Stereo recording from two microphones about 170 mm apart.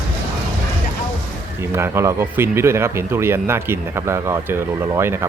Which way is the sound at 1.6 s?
15° right (ahead or behind).